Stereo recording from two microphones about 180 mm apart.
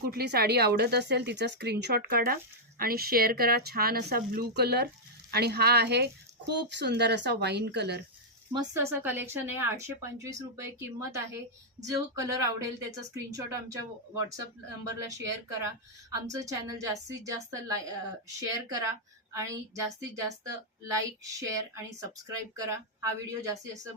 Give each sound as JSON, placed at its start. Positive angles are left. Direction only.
{"t": 0.0, "sound": "speech", "side_deg": -60}
{"t": 8.5, "sound": "a woman's voice", "side_deg": -15}
{"t": 14.8, "sound": "a woman's voice", "side_deg": -15}